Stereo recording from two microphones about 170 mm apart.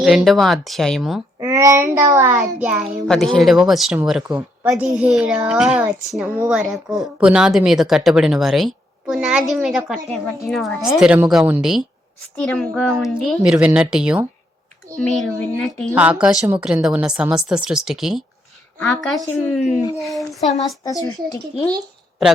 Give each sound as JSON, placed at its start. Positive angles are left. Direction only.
{"t": 0.0, "sound": "speech", "side_deg": -5}
{"t": 1.4, "sound": "a child's voice", "side_deg": -15}
{"t": 16.0, "sound": "speech", "side_deg": -5}
{"t": 20.8, "sound": "speech", "side_deg": 20}